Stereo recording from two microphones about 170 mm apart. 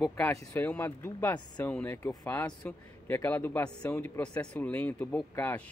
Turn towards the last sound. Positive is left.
turn(degrees=10)  # may be behind; listen again after turning